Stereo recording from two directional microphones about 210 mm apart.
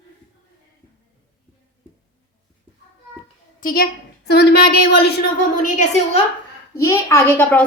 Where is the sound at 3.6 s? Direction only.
45° left (ahead or behind).